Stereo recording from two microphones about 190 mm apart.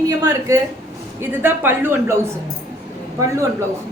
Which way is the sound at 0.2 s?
15° right (ahead or behind).